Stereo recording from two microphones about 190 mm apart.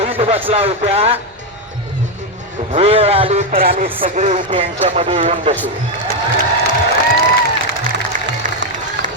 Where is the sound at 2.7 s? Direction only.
30° right (ahead or behind).